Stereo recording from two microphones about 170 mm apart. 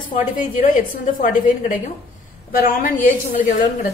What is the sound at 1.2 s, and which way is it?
A woman's voice, 50° left (ahead or behind).